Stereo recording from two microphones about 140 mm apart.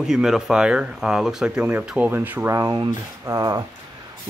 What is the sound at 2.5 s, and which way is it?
Speech, 25° right (ahead or behind).